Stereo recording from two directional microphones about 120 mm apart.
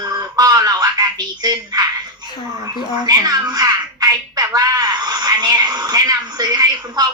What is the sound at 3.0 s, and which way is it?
Speech, 30° right (ahead or behind).